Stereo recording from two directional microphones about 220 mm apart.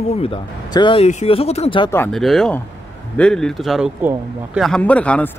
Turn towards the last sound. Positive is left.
turn(degrees=5)  # may be behind; listen again after turning